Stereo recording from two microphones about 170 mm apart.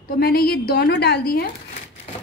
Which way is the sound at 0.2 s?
60° left (ahead or behind).